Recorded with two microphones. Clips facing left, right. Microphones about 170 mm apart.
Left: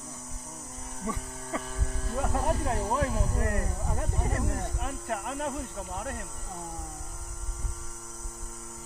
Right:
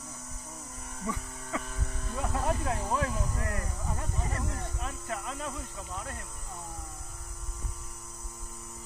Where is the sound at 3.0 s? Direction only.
40° left (ahead or behind).